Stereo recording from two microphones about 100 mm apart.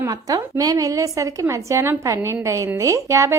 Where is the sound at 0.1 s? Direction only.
40° right (ahead or behind).